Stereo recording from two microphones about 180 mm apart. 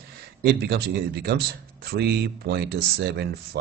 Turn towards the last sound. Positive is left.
turn(degrees=-65)  # may be behind; listen again after turning